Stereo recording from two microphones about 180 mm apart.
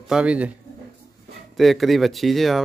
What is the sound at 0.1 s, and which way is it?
Speech, 5° right (ahead or behind).